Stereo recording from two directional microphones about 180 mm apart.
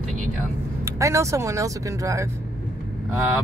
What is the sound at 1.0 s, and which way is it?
Speech, 15° right (ahead or behind).